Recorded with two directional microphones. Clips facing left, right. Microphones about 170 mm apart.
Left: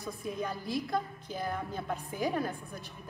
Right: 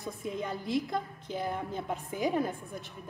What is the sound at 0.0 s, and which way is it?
A woman's voice, 20° right (ahead or behind).